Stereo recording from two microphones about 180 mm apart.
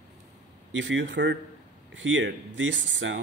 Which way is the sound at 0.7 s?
90° right.